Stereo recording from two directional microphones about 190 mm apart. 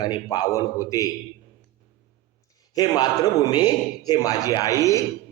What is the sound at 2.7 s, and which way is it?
A man's voice, 20° left (ahead or behind).